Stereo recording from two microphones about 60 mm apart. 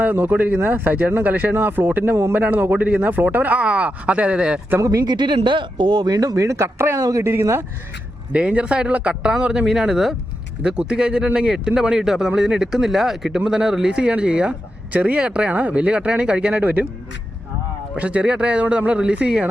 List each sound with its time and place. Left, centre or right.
0.0 s speech: right
2.4 s speech: right
4.8 s speech: right
6.1 s speech: right
8.3 s speech: centre
17.9 s speech: right